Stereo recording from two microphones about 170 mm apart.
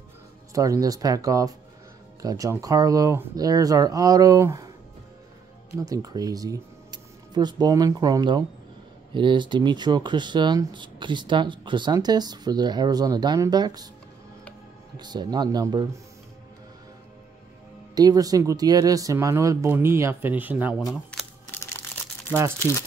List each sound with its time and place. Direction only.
0.5 s speech: 20° right (ahead or behind)
5.8 s speech: 20° right (ahead or behind)
15.0 s speech: 25° right (ahead or behind)
17.9 s speech: 20° right (ahead or behind)
20.9 s camera: centre (ahead or behind)